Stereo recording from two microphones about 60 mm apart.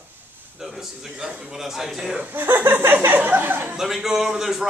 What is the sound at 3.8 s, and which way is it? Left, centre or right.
Speech, centre.